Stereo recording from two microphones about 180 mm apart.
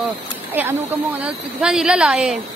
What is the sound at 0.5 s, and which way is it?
A woman's voice, 10° right (ahead or behind).